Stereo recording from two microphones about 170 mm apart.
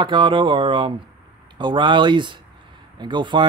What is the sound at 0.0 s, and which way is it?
Speech, 30° right (ahead or behind).